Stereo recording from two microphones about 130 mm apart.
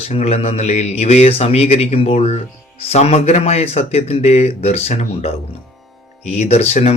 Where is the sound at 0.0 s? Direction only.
55° left (ahead or behind).